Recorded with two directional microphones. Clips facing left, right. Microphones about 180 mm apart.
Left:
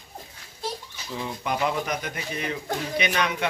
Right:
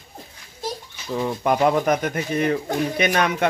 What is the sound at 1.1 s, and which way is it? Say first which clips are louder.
Speech: right 8 dB; 50° right (ahead or behind).